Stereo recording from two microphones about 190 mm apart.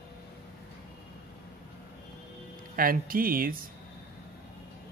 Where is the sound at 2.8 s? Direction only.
50° right (ahead or behind).